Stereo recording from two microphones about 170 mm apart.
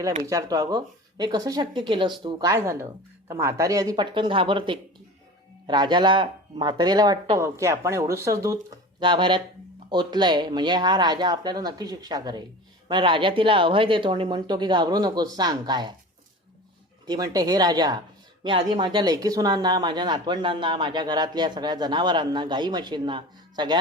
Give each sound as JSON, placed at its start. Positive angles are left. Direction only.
{"t": 0.2, "sound": "speech", "side_deg": -20}
{"t": 9.0, "sound": "speech", "side_deg": -30}
{"t": 17.1, "sound": "speech", "side_deg": -20}